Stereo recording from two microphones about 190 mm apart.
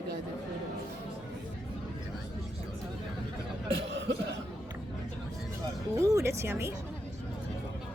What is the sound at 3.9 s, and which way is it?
Cough, 65° right (ahead or behind).